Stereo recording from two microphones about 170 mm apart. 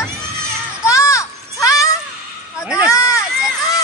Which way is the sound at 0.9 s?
20° left (ahead or behind).